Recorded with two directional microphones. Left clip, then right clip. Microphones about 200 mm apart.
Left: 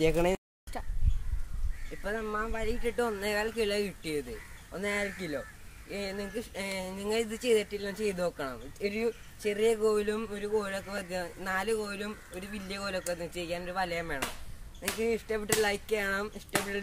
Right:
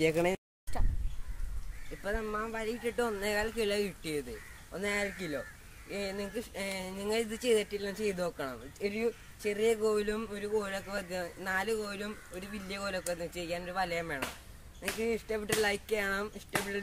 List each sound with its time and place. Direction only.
0.0 s speech: 20° left (ahead or behind)
0.7 s speech: 5° right (ahead or behind)
2.0 s speech: 5° right (ahead or behind)